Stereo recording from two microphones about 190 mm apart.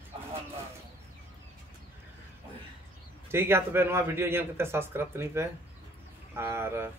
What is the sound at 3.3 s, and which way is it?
Speech, 10° right (ahead or behind).